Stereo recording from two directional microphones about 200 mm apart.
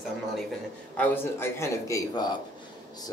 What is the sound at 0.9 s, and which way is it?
A man's voice, 10° left (ahead or behind).